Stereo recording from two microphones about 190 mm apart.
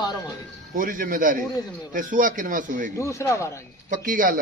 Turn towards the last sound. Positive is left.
turn(degrees=-45)  # may be behind; listen again after turning